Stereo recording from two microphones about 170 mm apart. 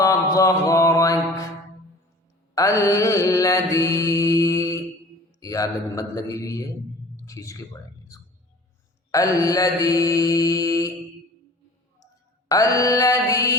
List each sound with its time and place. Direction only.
0.0 s mantra: 20° left (ahead or behind)
2.6 s mantra: 20° left (ahead or behind)
5.4 s speech: 20° left (ahead or behind)
9.1 s mantra: 20° left (ahead or behind)
12.5 s mantra: 20° left (ahead or behind)